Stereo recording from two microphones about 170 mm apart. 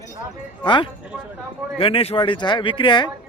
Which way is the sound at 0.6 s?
30° left (ahead or behind).